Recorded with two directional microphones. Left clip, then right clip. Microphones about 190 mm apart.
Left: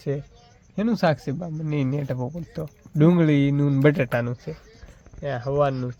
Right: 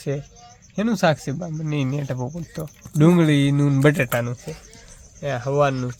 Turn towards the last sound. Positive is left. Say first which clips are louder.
# right 3 dB
turn(degrees=5)  # may be behind; listen again after turning